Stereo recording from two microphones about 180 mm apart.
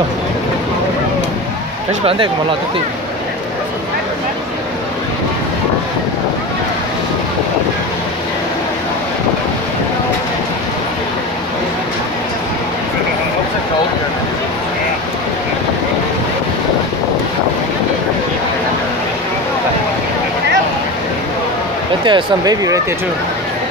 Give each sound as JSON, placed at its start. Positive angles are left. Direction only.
{"t": 22.0, "sound": "speech", "side_deg": -25}